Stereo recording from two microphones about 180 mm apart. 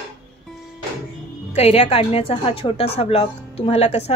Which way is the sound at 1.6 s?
35° left (ahead or behind).